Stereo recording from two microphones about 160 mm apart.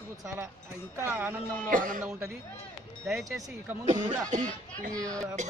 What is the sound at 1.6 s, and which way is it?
Speech, 60° right (ahead or behind).